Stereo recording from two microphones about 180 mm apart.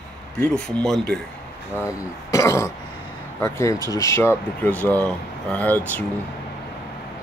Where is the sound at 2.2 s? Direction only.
15° left (ahead or behind).